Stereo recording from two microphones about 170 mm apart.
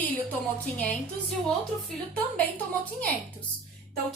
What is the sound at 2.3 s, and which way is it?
A woman's voice, 10° left (ahead or behind).